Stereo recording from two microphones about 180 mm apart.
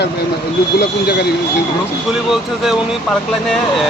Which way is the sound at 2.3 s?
5° right (ahead or behind).